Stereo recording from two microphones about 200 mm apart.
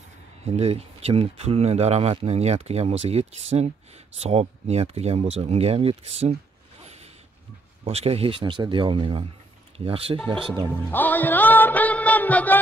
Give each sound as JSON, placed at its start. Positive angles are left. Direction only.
{"t": 0.5, "sound": "speech", "side_deg": -30}
{"t": 7.8, "sound": "speech", "side_deg": -30}
{"t": 10.9, "sound": "music", "side_deg": 10}